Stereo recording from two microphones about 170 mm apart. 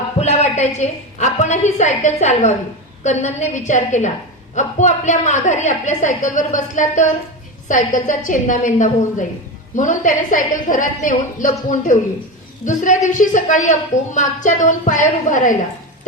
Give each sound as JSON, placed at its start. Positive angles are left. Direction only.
{"t": 0.2, "sound": "a woman's voice", "side_deg": 40}